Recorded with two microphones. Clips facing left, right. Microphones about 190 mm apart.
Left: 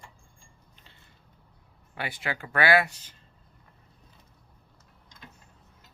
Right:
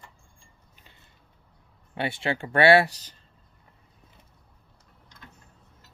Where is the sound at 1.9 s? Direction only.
25° right (ahead or behind).